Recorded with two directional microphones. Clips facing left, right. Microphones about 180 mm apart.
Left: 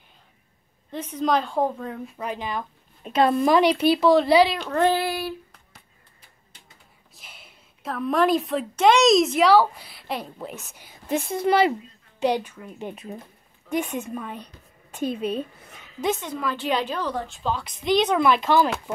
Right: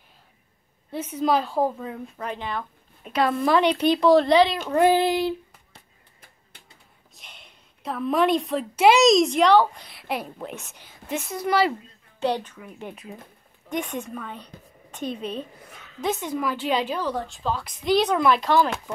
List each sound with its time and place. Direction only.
0.9 s a woman's voice: 10° right (ahead or behind)
2.1 s speech: 10° left (ahead or behind)
3.0 s a woman's voice: 25° left (ahead or behind)
3.4 s speech: 10° left (ahead or behind)
4.6 s a sound: 10° right (ahead or behind)
7.2 s a woman's voice: 5° left (ahead or behind)
11.1 s a woman's voice: 30° left (ahead or behind)
12.2 s a woman's voice: 10° left (ahead or behind)
13.7 s speech: 5° left (ahead or behind)
16.2 s a woman's voice: 10° right (ahead or behind); by 18.9 s 5° left (ahead or behind)